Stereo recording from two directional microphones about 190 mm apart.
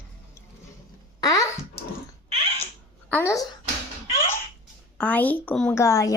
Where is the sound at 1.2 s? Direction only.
20° left (ahead or behind).